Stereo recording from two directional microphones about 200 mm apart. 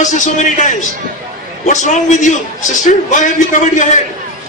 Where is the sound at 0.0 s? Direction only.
40° left (ahead or behind).